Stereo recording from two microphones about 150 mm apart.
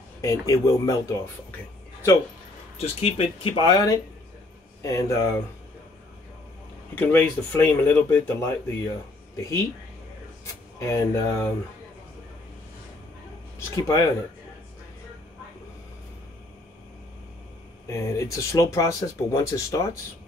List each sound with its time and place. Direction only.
0.2 s speech: 20° left (ahead or behind)
2.8 s speech: 40° left (ahead or behind); by 5.3 s 20° left (ahead or behind)
7.0 s speech: 15° left (ahead or behind)
13.6 s speech: 20° left (ahead or behind)
17.8 s speech: 20° left (ahead or behind)